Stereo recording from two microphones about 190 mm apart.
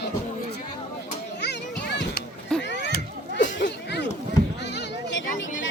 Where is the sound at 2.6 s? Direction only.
70° left (ahead or behind).